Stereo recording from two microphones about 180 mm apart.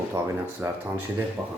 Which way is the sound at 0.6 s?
15° right (ahead or behind).